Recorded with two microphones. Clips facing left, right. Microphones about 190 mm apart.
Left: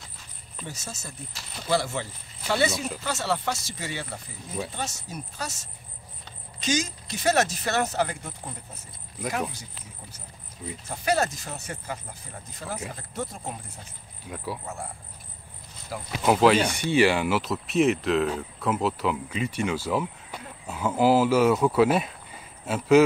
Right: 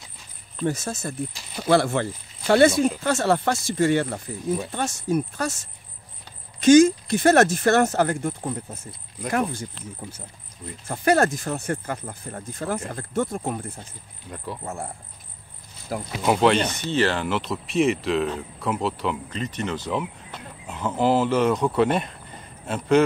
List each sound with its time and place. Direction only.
0.7 s speech: 55° right (ahead or behind)
6.6 s speech: 55° right (ahead or behind)
10.9 s speech: 55° right (ahead or behind)
14.3 s speech: 5° left (ahead or behind)
16.2 s speech: 5° left (ahead or behind)